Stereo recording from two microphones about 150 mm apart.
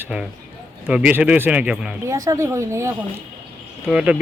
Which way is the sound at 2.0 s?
20° right (ahead or behind).